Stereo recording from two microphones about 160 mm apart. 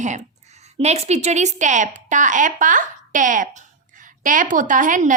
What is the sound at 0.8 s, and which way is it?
A woman's voice, 45° right (ahead or behind).